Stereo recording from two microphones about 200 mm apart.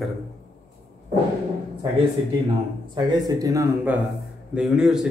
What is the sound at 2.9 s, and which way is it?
Speech, 15° right (ahead or behind).